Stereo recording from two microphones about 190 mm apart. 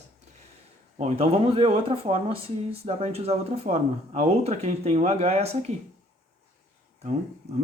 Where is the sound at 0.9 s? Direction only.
35° right (ahead or behind).